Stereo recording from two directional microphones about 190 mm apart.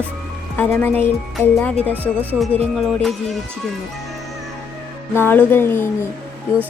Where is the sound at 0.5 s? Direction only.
10° left (ahead or behind).